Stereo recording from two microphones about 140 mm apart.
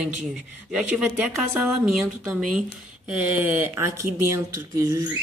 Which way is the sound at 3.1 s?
10° right (ahead or behind).